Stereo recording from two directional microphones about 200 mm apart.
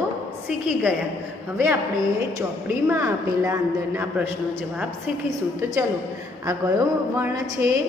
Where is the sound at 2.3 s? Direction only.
15° right (ahead or behind).